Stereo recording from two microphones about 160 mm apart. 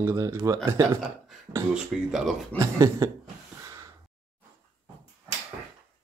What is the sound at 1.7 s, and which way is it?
Speech, 5° right (ahead or behind).